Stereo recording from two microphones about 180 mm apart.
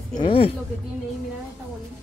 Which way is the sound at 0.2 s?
30° left (ahead or behind).